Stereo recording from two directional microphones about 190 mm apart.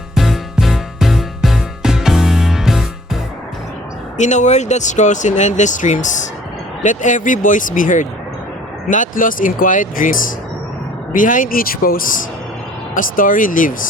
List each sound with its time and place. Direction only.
0.1 s music: centre (ahead or behind)
4.2 s speech: 40° left (ahead or behind)